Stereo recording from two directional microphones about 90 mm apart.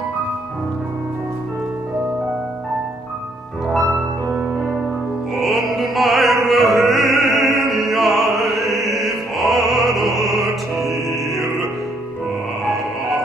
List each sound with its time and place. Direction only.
3.7 s music: 35° right (ahead or behind)
5.3 s music: centre (ahead or behind)